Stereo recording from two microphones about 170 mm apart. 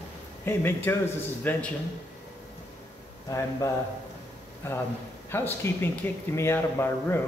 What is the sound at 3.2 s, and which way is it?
Speech, 20° left (ahead or behind).